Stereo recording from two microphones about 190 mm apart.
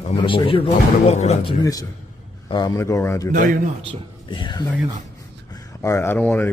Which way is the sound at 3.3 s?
45° right (ahead or behind).